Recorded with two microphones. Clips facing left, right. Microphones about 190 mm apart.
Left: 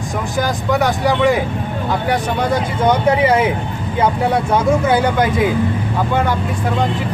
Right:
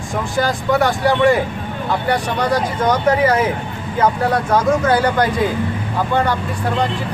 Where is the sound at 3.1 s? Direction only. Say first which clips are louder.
Even; 10° left (ahead or behind).